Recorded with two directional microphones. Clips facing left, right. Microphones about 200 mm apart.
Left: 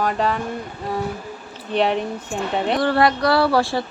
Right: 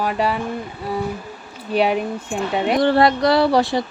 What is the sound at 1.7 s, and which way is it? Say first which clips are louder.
Speech: right 1 dB; 10° right (ahead or behind).